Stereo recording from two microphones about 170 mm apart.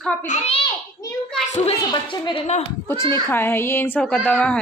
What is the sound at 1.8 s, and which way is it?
Speech, 25° left (ahead or behind).